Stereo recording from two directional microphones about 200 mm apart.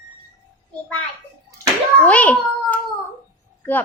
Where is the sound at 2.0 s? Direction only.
5° left (ahead or behind).